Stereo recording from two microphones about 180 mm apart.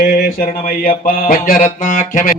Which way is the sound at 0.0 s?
55° left (ahead or behind).